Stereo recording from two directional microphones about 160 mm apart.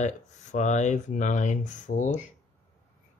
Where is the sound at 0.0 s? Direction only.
50° left (ahead or behind).